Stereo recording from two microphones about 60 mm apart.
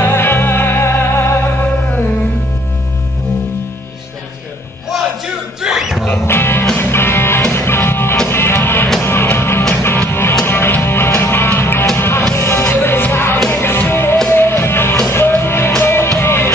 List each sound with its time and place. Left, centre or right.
0.0 s music: left
5.6 s music: centre
6.2 s music: left